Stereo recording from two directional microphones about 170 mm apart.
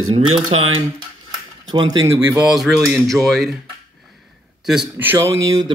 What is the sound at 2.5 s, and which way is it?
Speech, centre (ahead or behind).